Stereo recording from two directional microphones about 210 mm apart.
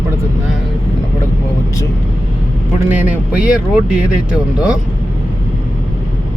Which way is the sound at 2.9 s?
10° right (ahead or behind).